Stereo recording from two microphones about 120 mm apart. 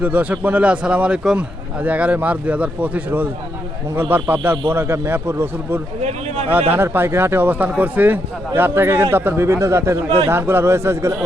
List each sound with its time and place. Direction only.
0.0 s a man's voice: 15° right (ahead or behind)
6.0 s a sound: 65° right (ahead or behind)
6.7 s a man's voice: 20° right (ahead or behind)